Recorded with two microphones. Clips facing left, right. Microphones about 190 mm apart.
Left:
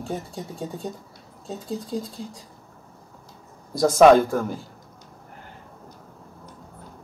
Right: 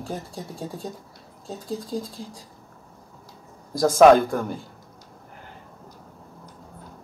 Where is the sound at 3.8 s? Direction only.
Centre (ahead or behind).